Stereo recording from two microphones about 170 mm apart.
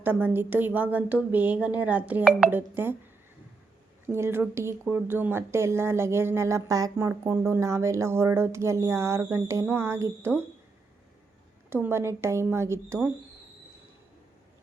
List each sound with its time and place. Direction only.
0.0 s speech: 10° right (ahead or behind)
4.0 s speech: 15° right (ahead or behind)
11.7 s speech: 15° right (ahead or behind)